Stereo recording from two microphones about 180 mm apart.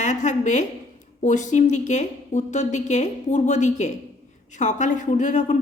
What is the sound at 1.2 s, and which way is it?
A woman's voice, 45° left (ahead or behind).